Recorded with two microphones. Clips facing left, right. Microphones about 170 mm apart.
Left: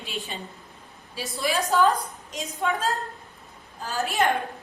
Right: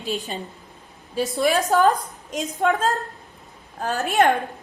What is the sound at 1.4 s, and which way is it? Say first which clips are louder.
Speech: right 5 dB; 55° right (ahead or behind).